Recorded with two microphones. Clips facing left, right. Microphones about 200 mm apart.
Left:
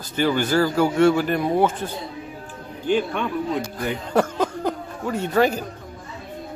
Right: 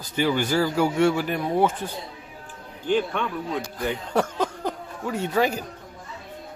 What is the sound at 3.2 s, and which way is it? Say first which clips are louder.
Speech: left 2 dB; 15° left (ahead or behind).